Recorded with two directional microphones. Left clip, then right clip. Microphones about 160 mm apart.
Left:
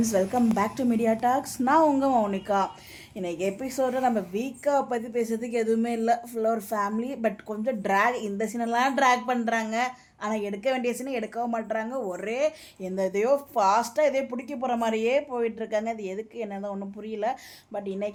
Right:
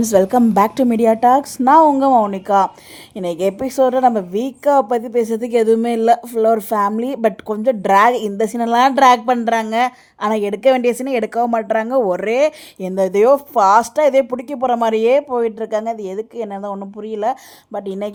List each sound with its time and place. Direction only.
0.0 s a woman's voice: 60° right (ahead or behind); by 17.3 s 35° right (ahead or behind)
17.7 s a woman's voice: 50° right (ahead or behind)